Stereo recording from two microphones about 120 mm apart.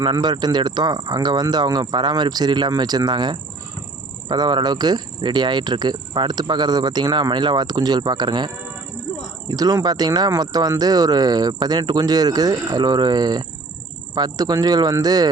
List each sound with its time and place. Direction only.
0.0 s speech: 35° right (ahead or behind)
9.5 s speech: 35° right (ahead or behind)